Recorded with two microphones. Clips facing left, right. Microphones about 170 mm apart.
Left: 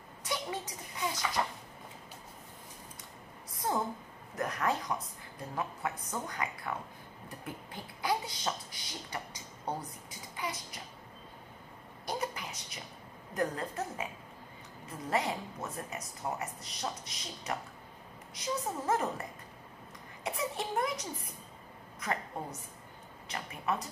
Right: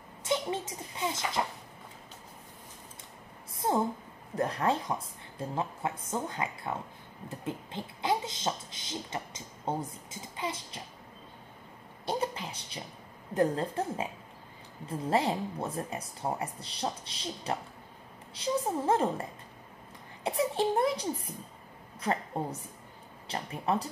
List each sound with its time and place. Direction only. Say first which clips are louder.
0.2 s speech: right 6 dB; 25° right (ahead or behind)
3.5 s a sound: right 4 dB; 25° right (ahead or behind)
4.4 s speech: right 4 dB; 30° right (ahead or behind)
12.1 s a sound: right 4 dB; 30° right (ahead or behind)
13.3 s speech: right 6 dB; 30° right (ahead or behind)
20.2 s speech: right 7 dB; 30° right (ahead or behind)